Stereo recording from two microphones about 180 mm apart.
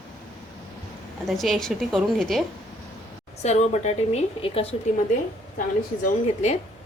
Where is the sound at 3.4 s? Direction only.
40° left (ahead or behind).